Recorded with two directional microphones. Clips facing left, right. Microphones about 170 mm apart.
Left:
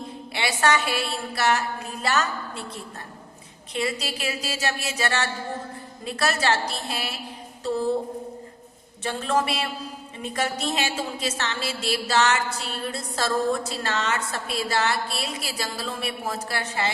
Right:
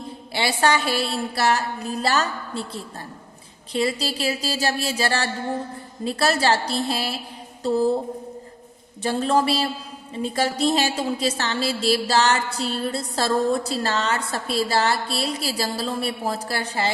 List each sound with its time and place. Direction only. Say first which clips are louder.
0.3 s a woman's voice: right 2 dB; 30° right (ahead or behind)
9.0 s a woman's voice: right 4 dB; 35° right (ahead or behind)